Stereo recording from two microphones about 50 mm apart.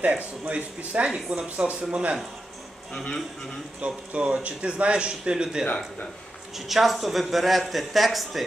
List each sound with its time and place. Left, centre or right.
0.1 s speech: right
1.1 s speech: centre
1.6 s speech: right
2.9 s speech: centre
3.8 s speech: right
6.5 s speech: centre